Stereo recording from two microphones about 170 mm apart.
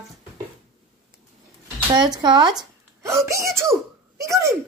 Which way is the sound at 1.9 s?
25° right (ahead or behind).